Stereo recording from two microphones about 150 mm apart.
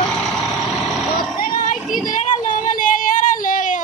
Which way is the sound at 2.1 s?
60° left (ahead or behind).